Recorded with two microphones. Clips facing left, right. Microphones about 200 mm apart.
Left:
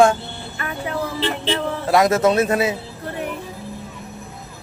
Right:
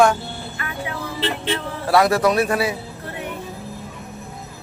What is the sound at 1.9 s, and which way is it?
Speech, 20° left (ahead or behind).